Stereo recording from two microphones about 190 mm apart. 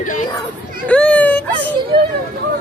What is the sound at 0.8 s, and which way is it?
Speech, 5° left (ahead or behind).